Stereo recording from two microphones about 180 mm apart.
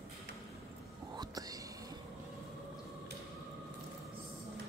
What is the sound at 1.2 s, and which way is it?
Whispering, 20° right (ahead or behind).